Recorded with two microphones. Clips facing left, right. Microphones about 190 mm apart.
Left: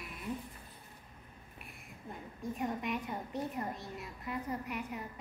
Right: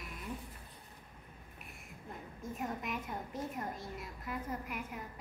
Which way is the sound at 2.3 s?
Centre (ahead or behind).